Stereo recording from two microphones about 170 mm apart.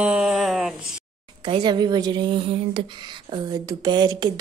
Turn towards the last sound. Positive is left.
turn(degrees=-25)  # may be behind; listen again after turning